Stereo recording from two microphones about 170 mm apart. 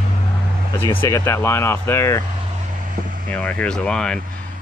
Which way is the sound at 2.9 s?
55° right (ahead or behind).